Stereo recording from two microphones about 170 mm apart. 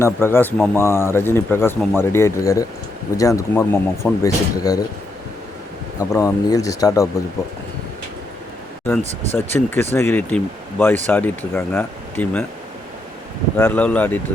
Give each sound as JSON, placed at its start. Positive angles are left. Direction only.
{"t": 0.0, "sound": "speech", "side_deg": 15}
{"t": 6.0, "sound": "speech", "side_deg": 20}
{"t": 8.9, "sound": "speech", "side_deg": 10}
{"t": 13.6, "sound": "speech", "side_deg": 10}